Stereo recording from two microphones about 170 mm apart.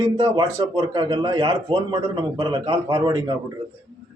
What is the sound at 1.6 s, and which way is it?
A man's voice, 35° right (ahead or behind).